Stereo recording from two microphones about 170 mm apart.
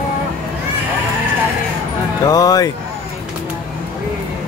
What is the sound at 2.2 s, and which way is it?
Music, 20° left (ahead or behind).